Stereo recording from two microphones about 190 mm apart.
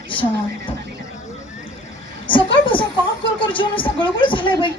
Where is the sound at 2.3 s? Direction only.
25° left (ahead or behind).